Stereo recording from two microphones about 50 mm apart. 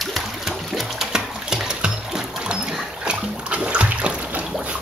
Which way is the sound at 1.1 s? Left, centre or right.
Centre.